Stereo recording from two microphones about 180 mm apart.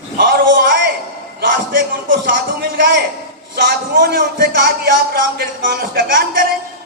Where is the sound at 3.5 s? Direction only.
55° right (ahead or behind).